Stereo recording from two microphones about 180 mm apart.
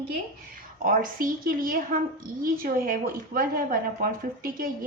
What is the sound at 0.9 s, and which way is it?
A woman's voice, 50° right (ahead or behind).